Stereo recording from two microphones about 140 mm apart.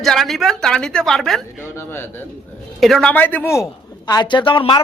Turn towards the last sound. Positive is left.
turn(degrees=35)  # may be behind; listen again after turning